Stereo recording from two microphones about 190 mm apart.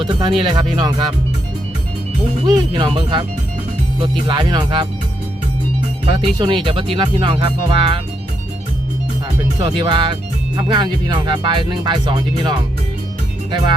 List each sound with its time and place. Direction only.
0.1 s speech: 25° right (ahead or behind)
2.5 s speech: 25° right (ahead or behind)
6.4 s speech: 25° right (ahead or behind)
9.6 s speech: 25° right (ahead or behind)